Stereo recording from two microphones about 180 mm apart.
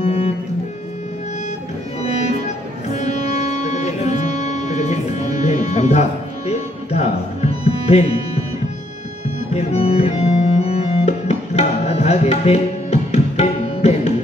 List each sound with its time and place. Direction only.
0.0 s music: 35° left (ahead or behind)
2.0 s music: 40° left (ahead or behind)
9.5 s music: 35° left (ahead or behind)